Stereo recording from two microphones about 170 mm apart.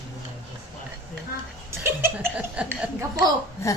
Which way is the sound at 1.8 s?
15° right (ahead or behind).